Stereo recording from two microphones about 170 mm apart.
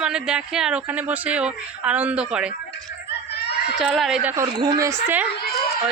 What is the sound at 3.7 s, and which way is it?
Speech, 5° right (ahead or behind).